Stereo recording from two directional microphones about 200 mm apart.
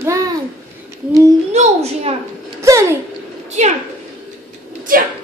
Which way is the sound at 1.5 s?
30° right (ahead or behind).